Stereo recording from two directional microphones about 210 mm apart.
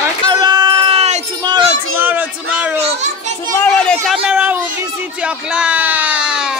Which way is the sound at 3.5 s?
5° left (ahead or behind).